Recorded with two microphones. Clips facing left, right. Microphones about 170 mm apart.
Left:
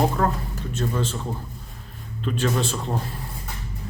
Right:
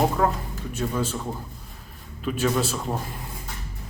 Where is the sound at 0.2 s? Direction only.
5° right (ahead or behind).